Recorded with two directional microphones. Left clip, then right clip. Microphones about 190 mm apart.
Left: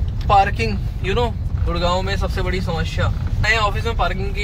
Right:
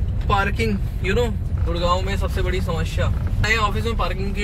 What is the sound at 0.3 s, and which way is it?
Speech, 5° right (ahead or behind).